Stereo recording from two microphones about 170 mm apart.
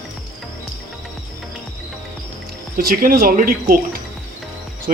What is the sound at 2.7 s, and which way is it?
A man's voice, 60° right (ahead or behind).